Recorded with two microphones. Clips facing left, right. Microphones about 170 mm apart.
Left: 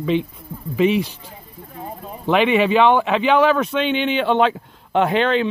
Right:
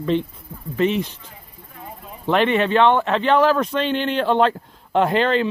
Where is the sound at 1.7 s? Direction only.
35° left (ahead or behind).